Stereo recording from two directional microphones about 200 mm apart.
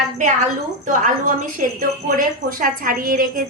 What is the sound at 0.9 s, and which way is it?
A woman's voice, 40° right (ahead or behind).